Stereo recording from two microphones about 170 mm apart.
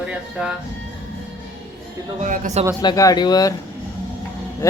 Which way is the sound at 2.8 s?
20° left (ahead or behind).